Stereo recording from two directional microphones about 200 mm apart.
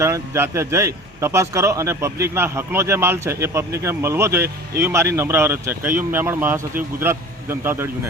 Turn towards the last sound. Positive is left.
turn(degrees=-10)  # may be behind; listen again after turning